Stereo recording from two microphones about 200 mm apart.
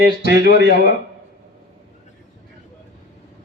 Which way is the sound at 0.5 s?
55° right (ahead or behind).